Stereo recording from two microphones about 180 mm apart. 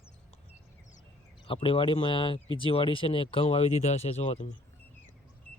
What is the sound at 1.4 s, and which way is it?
A man's voice, 30° left (ahead or behind).